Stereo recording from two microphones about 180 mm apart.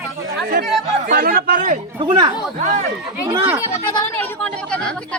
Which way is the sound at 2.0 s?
30° right (ahead or behind).